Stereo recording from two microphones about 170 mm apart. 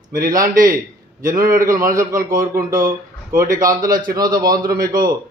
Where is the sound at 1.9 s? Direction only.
20° right (ahead or behind).